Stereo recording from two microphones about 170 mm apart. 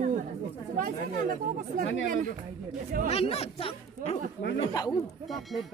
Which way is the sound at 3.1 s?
35° left (ahead or behind).